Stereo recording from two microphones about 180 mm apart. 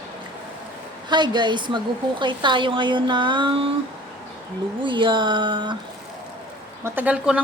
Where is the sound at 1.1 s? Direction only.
25° right (ahead or behind).